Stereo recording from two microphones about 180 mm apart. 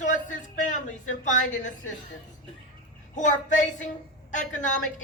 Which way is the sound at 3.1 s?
45° left (ahead or behind).